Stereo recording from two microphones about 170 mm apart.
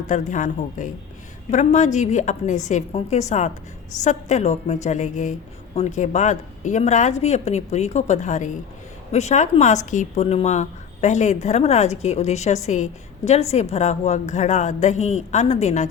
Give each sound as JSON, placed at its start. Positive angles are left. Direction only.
{"t": 0.1, "sound": "a woman's voice", "side_deg": 45}